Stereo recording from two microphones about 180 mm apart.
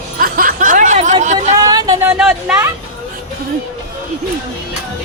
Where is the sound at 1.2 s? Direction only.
40° right (ahead or behind).